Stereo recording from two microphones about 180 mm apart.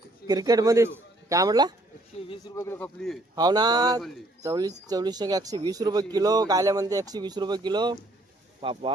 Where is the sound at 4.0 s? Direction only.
Centre (ahead or behind).